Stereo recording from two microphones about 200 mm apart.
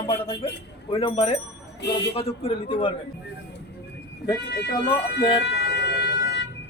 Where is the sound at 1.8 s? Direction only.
60° left (ahead or behind).